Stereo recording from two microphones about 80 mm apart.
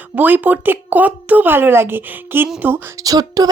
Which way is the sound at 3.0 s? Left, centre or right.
Right.